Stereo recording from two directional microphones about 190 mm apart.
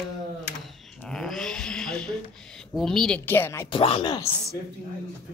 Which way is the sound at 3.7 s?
30° left (ahead or behind).